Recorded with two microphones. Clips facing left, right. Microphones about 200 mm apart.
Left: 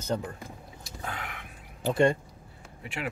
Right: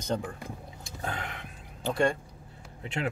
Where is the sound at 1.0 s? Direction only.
25° right (ahead or behind).